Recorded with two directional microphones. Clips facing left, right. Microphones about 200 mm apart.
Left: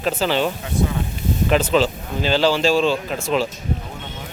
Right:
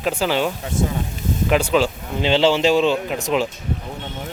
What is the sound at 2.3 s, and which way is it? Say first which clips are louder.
Speech: right 1 dB; 20° right (ahead or behind).